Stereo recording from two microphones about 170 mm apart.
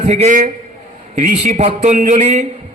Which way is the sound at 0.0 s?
40° right (ahead or behind).